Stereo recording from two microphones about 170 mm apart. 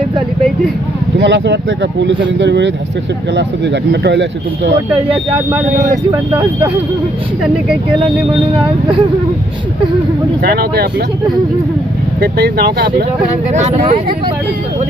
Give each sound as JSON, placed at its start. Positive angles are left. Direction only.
{"t": 1.2, "sound": "speech", "side_deg": -90}
{"t": 5.1, "sound": "speech", "side_deg": -15}
{"t": 10.4, "sound": "speech", "side_deg": -65}
{"t": 12.2, "sound": "speech", "side_deg": -70}
{"t": 13.5, "sound": "speech", "side_deg": -45}